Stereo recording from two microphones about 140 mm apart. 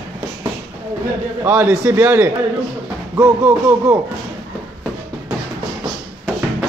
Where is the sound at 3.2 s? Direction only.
20° right (ahead or behind).